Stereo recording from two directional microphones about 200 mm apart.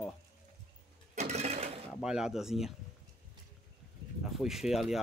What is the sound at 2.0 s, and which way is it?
Speech, 5° right (ahead or behind).